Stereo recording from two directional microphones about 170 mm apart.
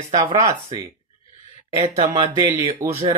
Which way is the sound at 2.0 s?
35° right (ahead or behind).